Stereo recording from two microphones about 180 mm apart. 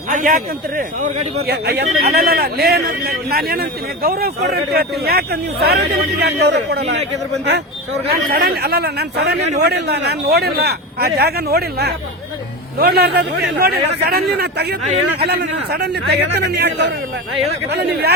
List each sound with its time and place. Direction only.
0.1 s speech: 45° right (ahead or behind)
1.5 s a man's voice: 65° right (ahead or behind)
8.3 s a man's voice: 60° right (ahead or behind)